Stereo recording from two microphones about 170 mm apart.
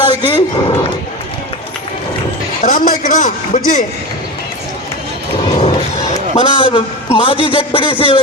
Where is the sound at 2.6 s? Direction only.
50° left (ahead or behind).